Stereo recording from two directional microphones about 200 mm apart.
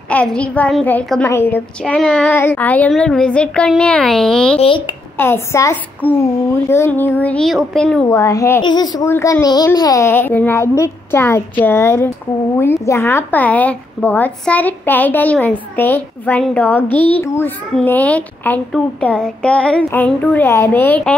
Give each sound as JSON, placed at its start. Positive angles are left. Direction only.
{"t": 0.1, "sound": "a woman's voice", "side_deg": 5}
{"t": 2.2, "sound": "speech", "side_deg": 10}
{"t": 4.6, "sound": "speech", "side_deg": 25}
{"t": 5.1, "sound": "a woman's voice", "side_deg": 10}
{"t": 8.2, "sound": "a woman's voice", "side_deg": 15}